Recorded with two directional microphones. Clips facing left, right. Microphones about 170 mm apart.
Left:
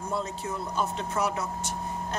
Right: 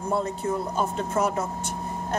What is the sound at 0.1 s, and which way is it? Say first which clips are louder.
Speech: right 7 dB; 55° right (ahead or behind).